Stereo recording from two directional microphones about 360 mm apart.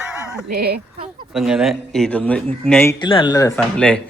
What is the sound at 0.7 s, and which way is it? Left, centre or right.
Speech, centre.